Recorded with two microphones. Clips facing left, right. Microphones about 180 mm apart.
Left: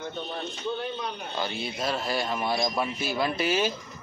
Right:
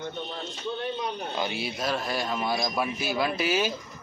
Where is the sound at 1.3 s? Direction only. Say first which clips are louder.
Left 1 dB; 10° right (ahead or behind).